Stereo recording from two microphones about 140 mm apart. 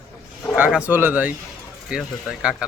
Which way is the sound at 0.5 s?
10° right (ahead or behind).